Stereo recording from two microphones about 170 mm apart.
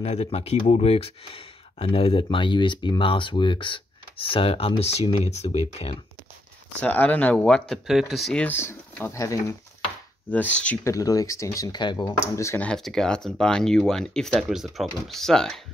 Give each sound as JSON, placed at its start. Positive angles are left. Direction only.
{"t": 0.0, "sound": "speech", "side_deg": 40}
{"t": 6.8, "sound": "speech", "side_deg": 10}
{"t": 10.3, "sound": "speech", "side_deg": 10}
{"t": 12.6, "sound": "speech", "side_deg": 5}